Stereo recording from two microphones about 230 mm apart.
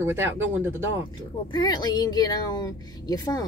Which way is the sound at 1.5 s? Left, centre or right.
Centre.